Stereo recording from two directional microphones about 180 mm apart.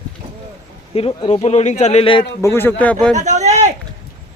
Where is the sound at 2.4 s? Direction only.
15° left (ahead or behind).